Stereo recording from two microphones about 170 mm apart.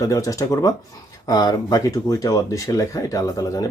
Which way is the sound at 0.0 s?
20° left (ahead or behind).